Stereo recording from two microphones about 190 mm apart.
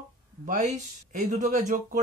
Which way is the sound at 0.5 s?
40° right (ahead or behind).